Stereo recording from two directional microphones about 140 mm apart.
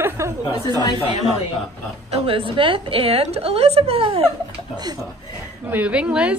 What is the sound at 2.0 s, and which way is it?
A woman's voice, 40° right (ahead or behind).